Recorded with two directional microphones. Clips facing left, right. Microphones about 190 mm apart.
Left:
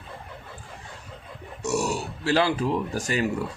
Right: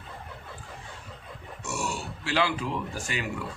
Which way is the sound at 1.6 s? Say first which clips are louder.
Left 7 dB; 40° left (ahead or behind).